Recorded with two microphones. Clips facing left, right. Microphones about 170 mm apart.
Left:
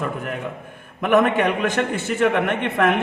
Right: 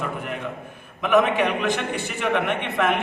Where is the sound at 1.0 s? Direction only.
50° left (ahead or behind).